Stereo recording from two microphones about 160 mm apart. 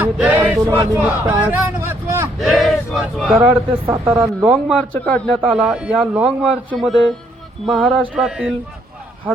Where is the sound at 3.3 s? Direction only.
40° right (ahead or behind).